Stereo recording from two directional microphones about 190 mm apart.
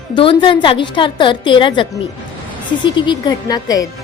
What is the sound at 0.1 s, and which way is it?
A woman's voice, 25° left (ahead or behind).